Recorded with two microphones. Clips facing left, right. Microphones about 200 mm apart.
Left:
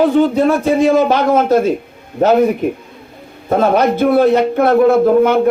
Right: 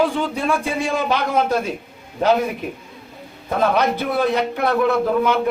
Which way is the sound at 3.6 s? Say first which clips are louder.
Left 6 dB; 50° left (ahead or behind).